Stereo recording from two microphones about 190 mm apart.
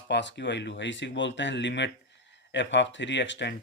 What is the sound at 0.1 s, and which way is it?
Speech, 65° left (ahead or behind).